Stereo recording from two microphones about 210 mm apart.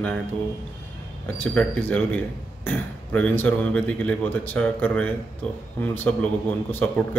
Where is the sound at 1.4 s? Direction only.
10° left (ahead or behind).